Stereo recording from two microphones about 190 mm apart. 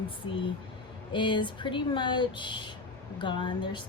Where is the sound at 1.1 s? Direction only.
25° left (ahead or behind).